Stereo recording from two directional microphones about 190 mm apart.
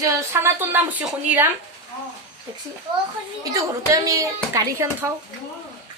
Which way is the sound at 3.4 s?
20° right (ahead or behind).